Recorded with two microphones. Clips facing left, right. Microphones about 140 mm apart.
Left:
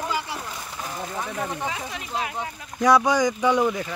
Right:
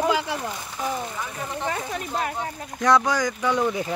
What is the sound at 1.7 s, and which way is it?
Speech, 45° right (ahead or behind).